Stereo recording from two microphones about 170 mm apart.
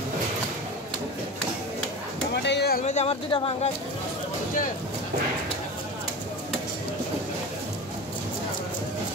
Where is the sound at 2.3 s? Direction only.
85° left.